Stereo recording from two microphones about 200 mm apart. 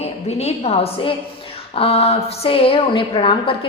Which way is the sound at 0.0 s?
30° left (ahead or behind).